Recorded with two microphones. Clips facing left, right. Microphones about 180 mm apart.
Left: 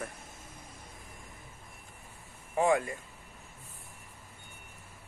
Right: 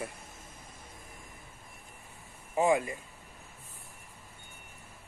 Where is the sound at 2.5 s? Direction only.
20° right (ahead or behind).